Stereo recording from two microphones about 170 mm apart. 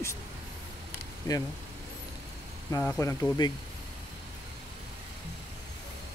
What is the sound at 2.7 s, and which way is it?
Speech, 15° left (ahead or behind).